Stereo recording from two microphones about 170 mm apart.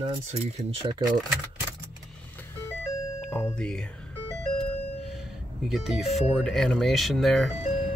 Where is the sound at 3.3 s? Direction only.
5° left (ahead or behind).